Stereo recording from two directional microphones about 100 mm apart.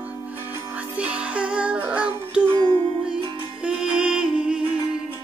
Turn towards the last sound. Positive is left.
turn(degrees=-10)  # may be behind; listen again after turning